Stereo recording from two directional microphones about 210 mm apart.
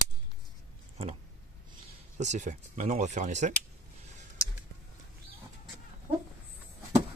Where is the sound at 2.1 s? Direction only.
35° right (ahead or behind).